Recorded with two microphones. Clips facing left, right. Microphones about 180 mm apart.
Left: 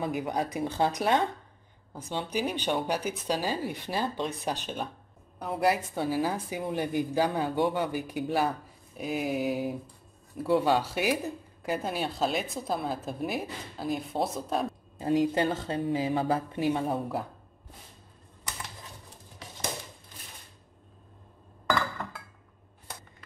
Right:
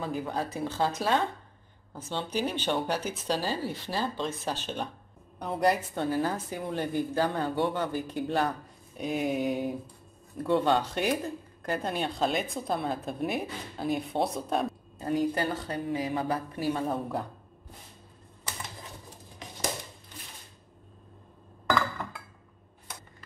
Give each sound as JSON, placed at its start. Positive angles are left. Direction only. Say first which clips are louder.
{"t": 0.0, "sound": "speech", "louder": "left 2 dB", "side_deg": 15}
{"t": 15.0, "sound": "a woman's voice", "louder": "left 3 dB", "side_deg": 25}
{"t": 16.9, "sound": "speech", "louder": "left 1 dB", "side_deg": 5}